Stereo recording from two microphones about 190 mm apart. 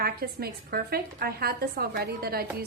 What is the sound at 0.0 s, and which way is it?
A woman's voice, 55° right (ahead or behind).